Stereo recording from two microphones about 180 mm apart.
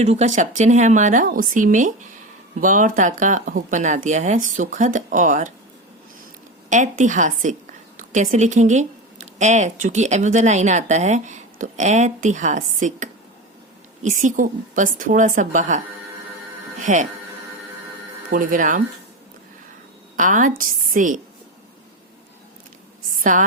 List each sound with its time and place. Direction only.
0.0 s speech: 40° right (ahead or behind)
6.7 s speech: 45° right (ahead or behind)
16.8 s speech: 45° right (ahead or behind)
18.3 s speech: 50° right (ahead or behind)
20.1 s speech: 45° right (ahead or behind)
23.1 s a woman's voice: 45° right (ahead or behind)